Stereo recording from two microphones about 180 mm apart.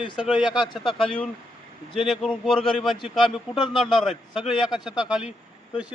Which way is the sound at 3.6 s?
25° left (ahead or behind).